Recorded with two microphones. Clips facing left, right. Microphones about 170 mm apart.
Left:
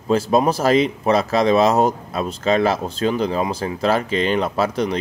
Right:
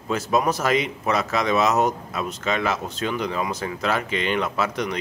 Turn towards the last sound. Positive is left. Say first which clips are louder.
# left 5 dB
turn(degrees=30)  # may be behind; listen again after turning